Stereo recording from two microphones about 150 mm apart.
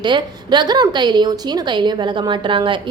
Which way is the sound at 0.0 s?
30° right (ahead or behind).